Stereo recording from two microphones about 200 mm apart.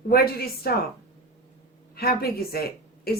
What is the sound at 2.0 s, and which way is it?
Speech, 50° left (ahead or behind).